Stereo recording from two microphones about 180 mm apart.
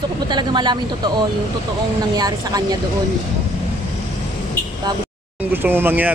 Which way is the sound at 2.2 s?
20° right (ahead or behind).